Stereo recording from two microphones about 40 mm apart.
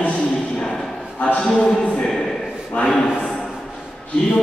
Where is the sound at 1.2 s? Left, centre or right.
Left.